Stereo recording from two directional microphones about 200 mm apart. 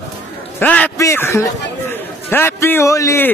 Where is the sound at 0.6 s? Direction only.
5° left (ahead or behind).